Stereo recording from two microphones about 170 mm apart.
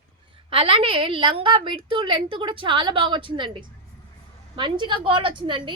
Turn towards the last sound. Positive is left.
turn(degrees=-30)  # may be behind; listen again after turning